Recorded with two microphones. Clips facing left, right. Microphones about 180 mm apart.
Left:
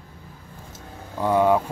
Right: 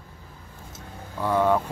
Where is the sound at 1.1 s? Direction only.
15° left (ahead or behind).